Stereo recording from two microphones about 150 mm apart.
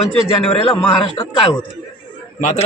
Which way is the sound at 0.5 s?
35° left (ahead or behind).